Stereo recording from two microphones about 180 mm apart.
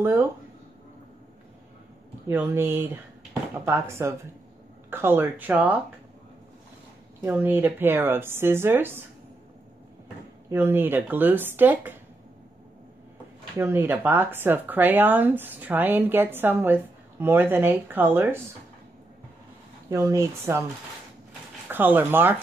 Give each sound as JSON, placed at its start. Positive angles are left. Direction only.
{"t": 0.0, "sound": "speech", "side_deg": -10}
{"t": 2.2, "sound": "speech", "side_deg": -10}
{"t": 7.2, "sound": "speech", "side_deg": -10}
{"t": 10.5, "sound": "speech", "side_deg": -10}
{"t": 13.6, "sound": "speech", "side_deg": -15}
{"t": 19.9, "sound": "speech", "side_deg": -15}
{"t": 21.6, "sound": "speech", "side_deg": -10}